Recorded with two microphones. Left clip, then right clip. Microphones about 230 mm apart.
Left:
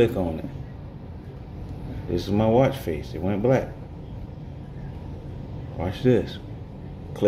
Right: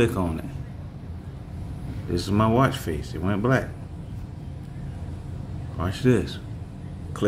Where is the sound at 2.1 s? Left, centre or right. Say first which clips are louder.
Left 2 dB; centre.